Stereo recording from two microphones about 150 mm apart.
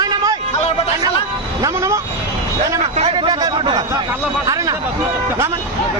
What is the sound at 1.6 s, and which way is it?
Vehicle, 20° right (ahead or behind).